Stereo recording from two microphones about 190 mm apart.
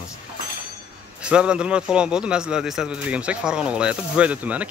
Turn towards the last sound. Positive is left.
turn(degrees=-10)  # may be behind; listen again after turning